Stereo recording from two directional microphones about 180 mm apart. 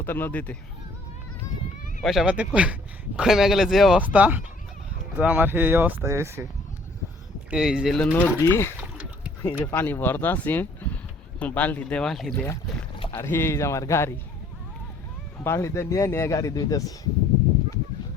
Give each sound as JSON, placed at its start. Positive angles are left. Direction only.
{"t": 0.0, "sound": "speech", "side_deg": 10}
{"t": 2.0, "sound": "speech", "side_deg": -5}
{"t": 7.5, "sound": "speech", "side_deg": -5}
{"t": 8.8, "sound": "a sound", "side_deg": -5}
{"t": 9.4, "sound": "speech", "side_deg": 15}
{"t": 15.4, "sound": "speech", "side_deg": 15}